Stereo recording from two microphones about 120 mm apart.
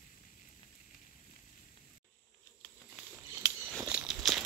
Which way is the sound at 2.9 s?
10° right (ahead or behind).